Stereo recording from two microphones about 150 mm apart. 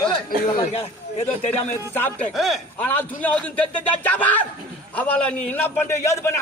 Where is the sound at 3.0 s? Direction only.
10° left (ahead or behind).